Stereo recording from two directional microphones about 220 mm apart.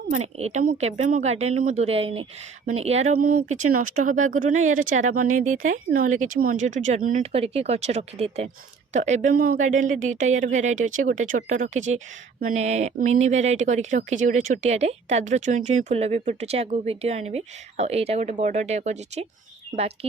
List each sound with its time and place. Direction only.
0.1 s speech: 30° right (ahead or behind)